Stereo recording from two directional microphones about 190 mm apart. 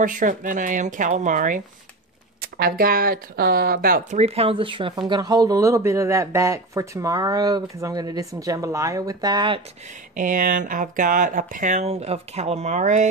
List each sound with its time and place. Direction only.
0.0 s speech: 45° right (ahead or behind)
2.5 s speech: 55° right (ahead or behind)
4.2 s speech: 30° right (ahead or behind)
10.1 s speech: 45° right (ahead or behind)